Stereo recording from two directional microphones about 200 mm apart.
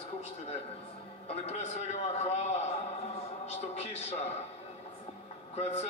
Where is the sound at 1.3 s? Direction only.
35° left (ahead or behind).